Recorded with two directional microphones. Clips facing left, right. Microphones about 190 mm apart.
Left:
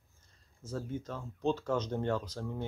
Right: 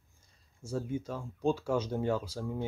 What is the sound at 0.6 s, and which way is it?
Speech, 10° right (ahead or behind).